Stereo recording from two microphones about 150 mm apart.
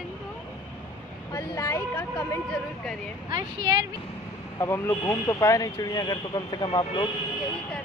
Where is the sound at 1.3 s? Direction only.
20° left (ahead or behind).